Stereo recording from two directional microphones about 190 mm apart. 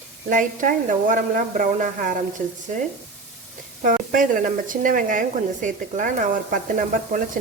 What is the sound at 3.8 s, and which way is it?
Speech, 45° right (ahead or behind).